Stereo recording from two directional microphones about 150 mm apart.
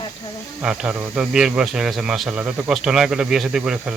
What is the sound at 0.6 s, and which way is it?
Speech, 5° right (ahead or behind).